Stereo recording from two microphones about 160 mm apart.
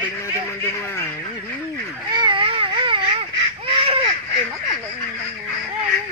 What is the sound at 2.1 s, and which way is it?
Baby cry, 30° right (ahead or behind).